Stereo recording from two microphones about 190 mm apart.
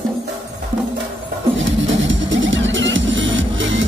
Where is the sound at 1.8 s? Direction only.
80° right.